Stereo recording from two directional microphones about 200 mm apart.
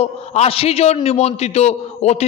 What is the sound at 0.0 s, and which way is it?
A man's voice, 30° left (ahead or behind).